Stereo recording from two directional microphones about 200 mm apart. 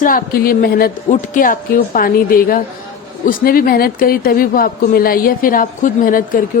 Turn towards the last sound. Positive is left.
turn(degrees=45)  # may be behind; listen again after turning